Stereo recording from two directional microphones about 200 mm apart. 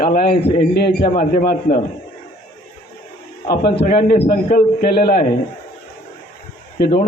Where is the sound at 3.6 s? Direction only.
50° left (ahead or behind).